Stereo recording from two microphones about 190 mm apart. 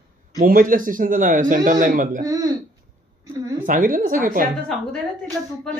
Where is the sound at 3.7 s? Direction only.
45° right (ahead or behind).